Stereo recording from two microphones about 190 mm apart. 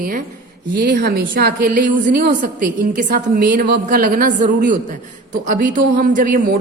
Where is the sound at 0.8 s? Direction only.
65° right (ahead or behind); by 1.9 s 45° right (ahead or behind).